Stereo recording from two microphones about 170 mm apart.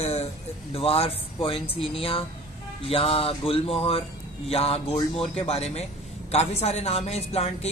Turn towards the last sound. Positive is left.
turn(degrees=40)  # may be behind; listen again after turning